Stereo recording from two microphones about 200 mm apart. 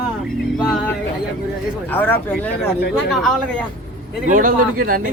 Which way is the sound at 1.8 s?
10° left (ahead or behind).